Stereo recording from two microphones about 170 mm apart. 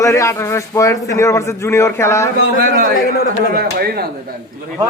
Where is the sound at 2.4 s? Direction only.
80° right.